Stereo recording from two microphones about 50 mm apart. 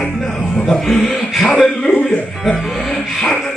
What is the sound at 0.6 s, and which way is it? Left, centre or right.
Speech, centre.